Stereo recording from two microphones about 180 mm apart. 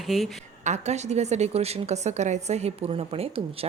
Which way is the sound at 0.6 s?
40° right (ahead or behind).